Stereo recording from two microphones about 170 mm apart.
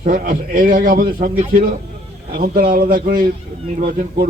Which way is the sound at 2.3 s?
60° right (ahead or behind).